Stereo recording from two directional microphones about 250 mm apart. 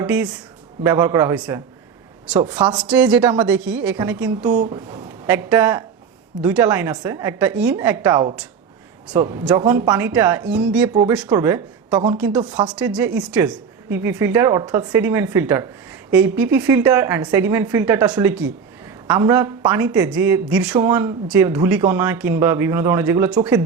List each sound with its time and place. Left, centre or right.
0.0 s a woman's voice: centre
2.9 s speech: centre
4.5 s a woman's voice: right
5.2 s a woman's voice: centre
12.7 s a woman's voice: centre